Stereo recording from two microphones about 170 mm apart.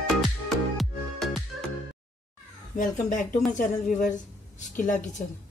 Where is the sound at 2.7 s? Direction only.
50° left (ahead or behind).